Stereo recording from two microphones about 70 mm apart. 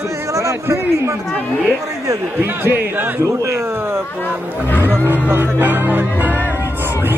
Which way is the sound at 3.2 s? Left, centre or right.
Right.